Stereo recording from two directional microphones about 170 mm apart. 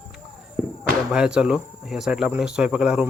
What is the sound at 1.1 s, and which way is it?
A man's voice, 5° right (ahead or behind).